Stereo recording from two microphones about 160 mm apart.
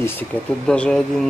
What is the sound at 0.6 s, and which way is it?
Speech, 5° left (ahead or behind).